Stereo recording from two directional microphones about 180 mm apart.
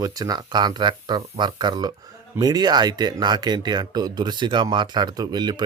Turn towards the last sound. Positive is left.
turn(degrees=-25)  # may be behind; listen again after turning